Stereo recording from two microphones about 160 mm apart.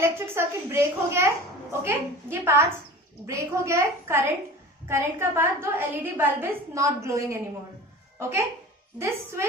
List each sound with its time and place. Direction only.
0.0 s a woman's voice: 15° right (ahead or behind)